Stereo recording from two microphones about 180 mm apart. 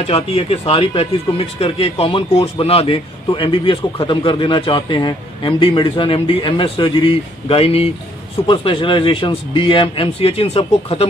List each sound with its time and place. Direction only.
0.0 s a man's voice: 35° left (ahead or behind)